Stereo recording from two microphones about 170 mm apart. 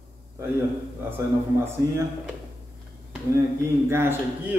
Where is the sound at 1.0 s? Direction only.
15° right (ahead or behind).